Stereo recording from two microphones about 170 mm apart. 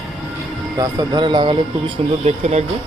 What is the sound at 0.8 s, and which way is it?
Speech, 25° right (ahead or behind).